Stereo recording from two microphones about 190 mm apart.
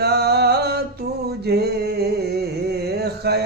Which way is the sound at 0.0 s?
60° right (ahead or behind).